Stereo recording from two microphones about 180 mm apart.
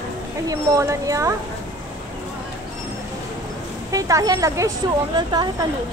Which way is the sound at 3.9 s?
20° right (ahead or behind).